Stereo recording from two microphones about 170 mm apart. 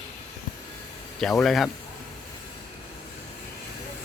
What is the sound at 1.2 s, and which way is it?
Speech, centre (ahead or behind).